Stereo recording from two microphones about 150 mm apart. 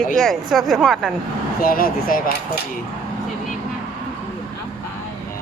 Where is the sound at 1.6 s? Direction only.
70° left (ahead or behind).